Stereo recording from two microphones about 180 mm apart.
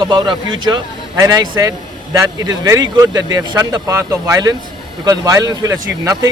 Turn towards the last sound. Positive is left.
turn(degrees=-20)  # may be behind; listen again after turning